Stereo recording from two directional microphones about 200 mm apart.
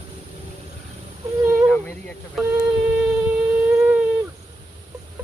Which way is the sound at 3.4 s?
10° right (ahead or behind).